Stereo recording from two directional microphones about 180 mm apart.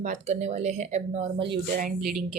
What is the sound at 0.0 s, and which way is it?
Speech, 40° right (ahead or behind).